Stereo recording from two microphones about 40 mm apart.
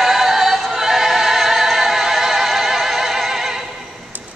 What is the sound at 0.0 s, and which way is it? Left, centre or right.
Music, centre.